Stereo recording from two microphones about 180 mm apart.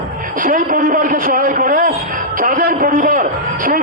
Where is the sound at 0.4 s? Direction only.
50° right (ahead or behind).